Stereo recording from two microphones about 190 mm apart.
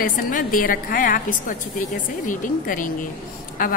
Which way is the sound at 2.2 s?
45° left (ahead or behind).